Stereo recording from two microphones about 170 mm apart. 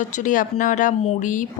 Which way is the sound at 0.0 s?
50° left (ahead or behind).